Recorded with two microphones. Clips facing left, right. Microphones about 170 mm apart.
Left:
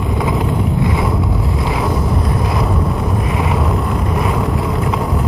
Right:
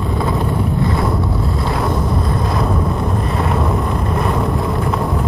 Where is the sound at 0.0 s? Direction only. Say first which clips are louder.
Left 1 dB; 10° left (ahead or behind).